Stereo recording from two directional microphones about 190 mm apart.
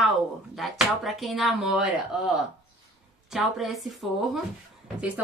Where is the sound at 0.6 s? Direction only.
Centre (ahead or behind).